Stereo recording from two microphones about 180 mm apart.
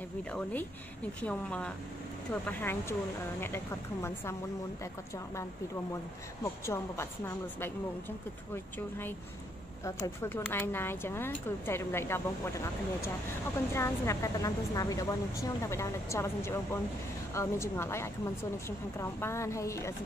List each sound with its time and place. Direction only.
0.2 s speech: 5° left (ahead or behind)
6.4 s speech: 15° left (ahead or behind)
8.7 s speech: 10° left (ahead or behind)